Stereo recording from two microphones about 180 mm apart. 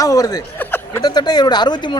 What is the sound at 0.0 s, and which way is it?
Snicker, 20° left (ahead or behind).